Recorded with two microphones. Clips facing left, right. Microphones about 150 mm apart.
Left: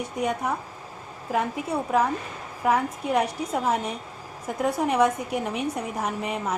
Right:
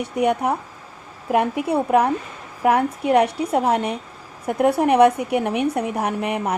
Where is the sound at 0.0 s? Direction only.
65° right (ahead or behind).